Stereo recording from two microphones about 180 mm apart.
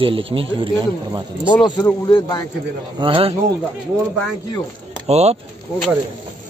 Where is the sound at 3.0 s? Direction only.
30° right (ahead or behind).